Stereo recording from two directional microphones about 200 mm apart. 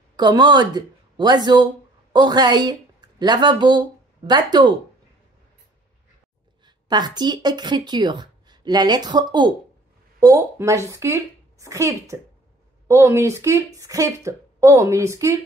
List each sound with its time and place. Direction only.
0.1 s a woman's voice: 20° right (ahead or behind)
6.6 s a woman's voice: 20° right (ahead or behind)